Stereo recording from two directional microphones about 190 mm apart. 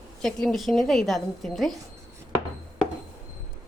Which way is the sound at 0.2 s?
Centre (ahead or behind).